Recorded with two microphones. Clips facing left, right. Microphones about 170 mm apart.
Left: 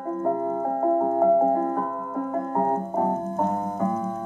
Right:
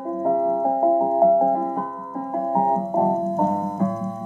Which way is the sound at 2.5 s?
20° right (ahead or behind).